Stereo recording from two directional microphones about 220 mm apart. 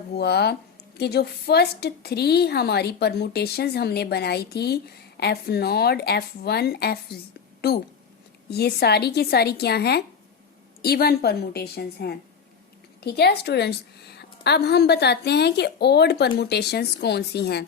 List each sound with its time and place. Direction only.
0.2 s a woman's voice: 45° left (ahead or behind)
8.4 s a woman's voice: 45° left (ahead or behind)